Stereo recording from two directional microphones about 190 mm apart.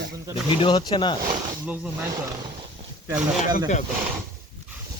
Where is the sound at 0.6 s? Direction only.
25° left (ahead or behind).